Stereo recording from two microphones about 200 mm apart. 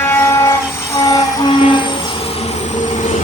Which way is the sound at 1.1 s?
20° left (ahead or behind).